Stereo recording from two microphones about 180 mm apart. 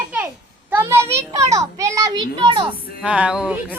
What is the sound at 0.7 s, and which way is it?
A child's voice, 15° right (ahead or behind).